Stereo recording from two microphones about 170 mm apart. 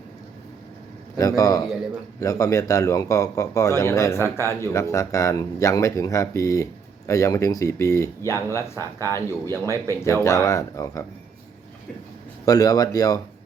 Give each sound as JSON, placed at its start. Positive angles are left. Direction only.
{"t": 1.1, "sound": "a man's voice", "side_deg": 20}
{"t": 12.5, "sound": "a man's voice", "side_deg": 20}